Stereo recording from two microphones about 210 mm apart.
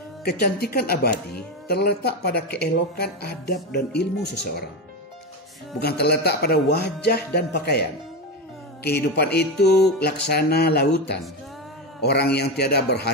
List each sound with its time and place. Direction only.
0.2 s speech: 50° left (ahead or behind)
5.8 s speech: 50° left (ahead or behind)
8.8 s speech: 50° left (ahead or behind)